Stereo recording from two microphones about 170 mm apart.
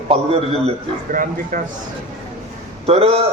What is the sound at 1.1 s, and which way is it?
Speech, 55° right (ahead or behind).